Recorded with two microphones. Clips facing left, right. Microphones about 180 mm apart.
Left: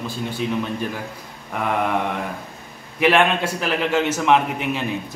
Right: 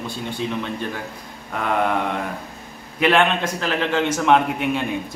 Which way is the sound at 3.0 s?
5° left (ahead or behind).